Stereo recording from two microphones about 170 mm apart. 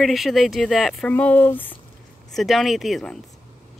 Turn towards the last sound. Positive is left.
turn(degrees=0)  # may be behind; listen again after turning